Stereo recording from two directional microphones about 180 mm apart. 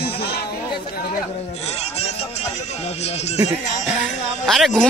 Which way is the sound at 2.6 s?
35° left (ahead or behind).